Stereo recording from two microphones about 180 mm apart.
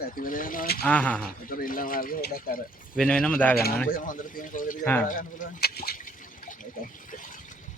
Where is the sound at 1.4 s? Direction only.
50° left (ahead or behind).